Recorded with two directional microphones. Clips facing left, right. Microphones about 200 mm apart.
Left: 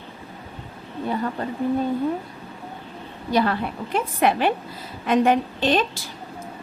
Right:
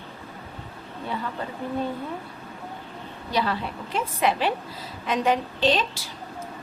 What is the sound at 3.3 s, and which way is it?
A woman's voice, 55° left (ahead or behind).